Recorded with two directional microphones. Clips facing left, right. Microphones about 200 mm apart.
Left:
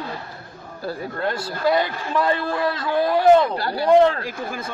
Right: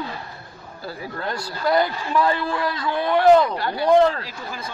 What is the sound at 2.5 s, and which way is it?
A man's voice, 35° left (ahead or behind).